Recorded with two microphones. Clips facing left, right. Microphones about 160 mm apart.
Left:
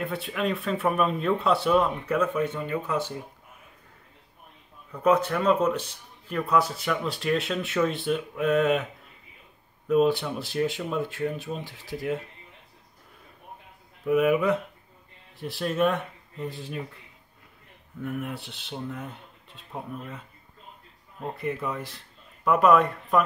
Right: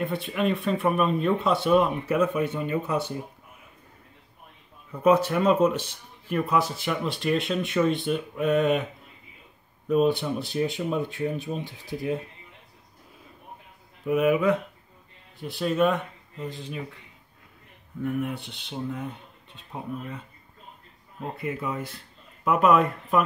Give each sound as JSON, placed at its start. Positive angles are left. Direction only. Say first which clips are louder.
{"t": 0.0, "sound": "a man's voice", "louder": "right 2 dB", "side_deg": 0}
{"t": 5.3, "sound": "speech", "louder": "right 2 dB", "side_deg": -20}
{"t": 6.2, "sound": "a man's voice", "louder": "even", "side_deg": -5}
{"t": 9.8, "sound": "a man's voice", "louder": "even", "side_deg": 0}
{"t": 14.0, "sound": "a man's voice", "louder": "even", "side_deg": 0}
{"t": 18.0, "sound": "a man's voice", "louder": "right 4 dB", "side_deg": 0}
{"t": 21.2, "sound": "speech", "louder": "left 1 dB", "side_deg": 0}